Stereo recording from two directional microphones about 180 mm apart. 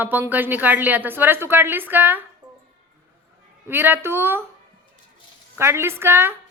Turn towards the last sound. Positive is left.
turn(degrees=-15)  # may be behind; listen again after turning